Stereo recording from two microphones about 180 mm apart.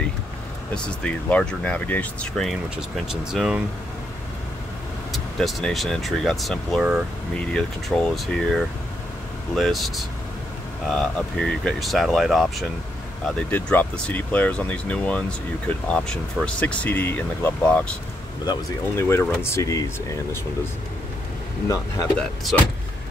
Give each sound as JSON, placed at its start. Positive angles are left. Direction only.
{"t": 0.7, "sound": "speech", "side_deg": 5}
{"t": 5.1, "sound": "speech", "side_deg": 0}
{"t": 22.5, "sound": "speech", "side_deg": 5}